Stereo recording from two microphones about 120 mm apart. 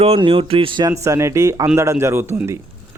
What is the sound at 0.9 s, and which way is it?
Speech, 25° right (ahead or behind).